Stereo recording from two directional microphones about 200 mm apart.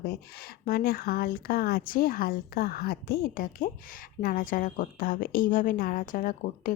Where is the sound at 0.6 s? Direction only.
50° left (ahead or behind).